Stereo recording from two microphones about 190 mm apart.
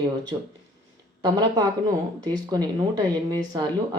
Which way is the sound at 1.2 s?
20° right (ahead or behind).